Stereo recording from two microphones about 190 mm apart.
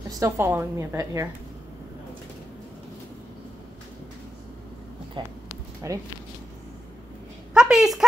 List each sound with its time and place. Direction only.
0.2 s a woman's voice: 15° right (ahead or behind)
5.2 s a woman's voice: 25° right (ahead or behind)
7.5 s a sound: 5° right (ahead or behind)